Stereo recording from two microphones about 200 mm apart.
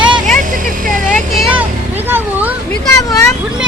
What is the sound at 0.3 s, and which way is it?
Vehicle, 40° right (ahead or behind).